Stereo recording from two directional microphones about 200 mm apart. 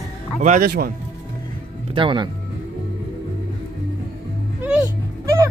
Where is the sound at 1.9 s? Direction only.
25° right (ahead or behind).